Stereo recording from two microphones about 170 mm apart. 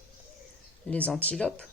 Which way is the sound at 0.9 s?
10° left (ahead or behind).